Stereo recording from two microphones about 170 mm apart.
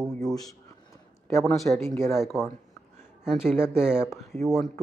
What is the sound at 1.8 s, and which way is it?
Speech, 15° left (ahead or behind).